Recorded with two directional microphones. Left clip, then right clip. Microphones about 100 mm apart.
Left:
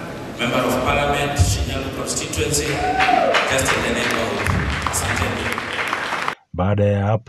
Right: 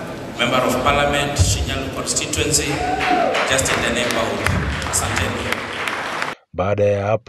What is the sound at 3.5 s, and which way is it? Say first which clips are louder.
Speech: right 1 dB; 15° right (ahead or behind).